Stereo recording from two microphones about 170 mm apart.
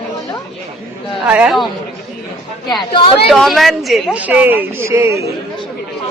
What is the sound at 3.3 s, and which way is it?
A woman's voice, centre (ahead or behind).